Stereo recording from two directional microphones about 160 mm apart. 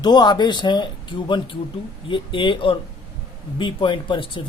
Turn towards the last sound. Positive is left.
turn(degrees=30)  # may be behind; listen again after turning